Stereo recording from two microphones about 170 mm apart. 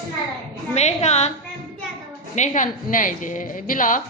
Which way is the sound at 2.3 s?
45° left (ahead or behind).